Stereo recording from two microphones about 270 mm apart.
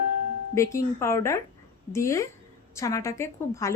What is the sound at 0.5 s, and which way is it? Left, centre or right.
A woman's voice, centre.